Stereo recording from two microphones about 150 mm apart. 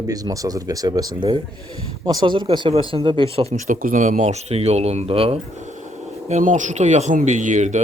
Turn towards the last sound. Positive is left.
turn(degrees=-55)  # may be behind; listen again after turning